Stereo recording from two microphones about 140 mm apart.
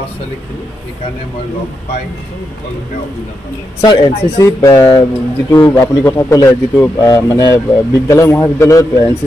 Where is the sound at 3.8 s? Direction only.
30° left (ahead or behind).